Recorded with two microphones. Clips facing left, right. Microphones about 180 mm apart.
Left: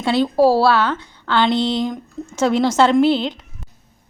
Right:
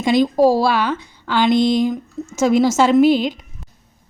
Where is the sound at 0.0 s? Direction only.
15° right (ahead or behind).